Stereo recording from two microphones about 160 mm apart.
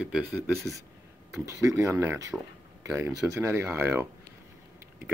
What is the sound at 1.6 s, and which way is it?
Speech, 20° right (ahead or behind).